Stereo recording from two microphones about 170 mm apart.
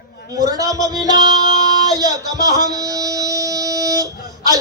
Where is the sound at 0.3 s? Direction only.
20° right (ahead or behind).